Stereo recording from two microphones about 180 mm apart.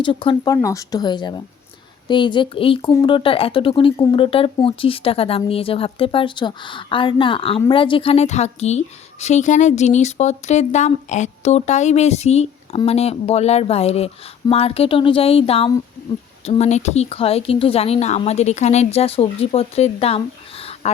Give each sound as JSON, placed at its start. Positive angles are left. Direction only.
{"t": 0.0, "sound": "speech", "side_deg": 30}